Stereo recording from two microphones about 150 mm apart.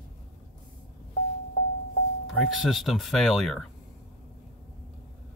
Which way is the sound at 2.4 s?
Centre (ahead or behind).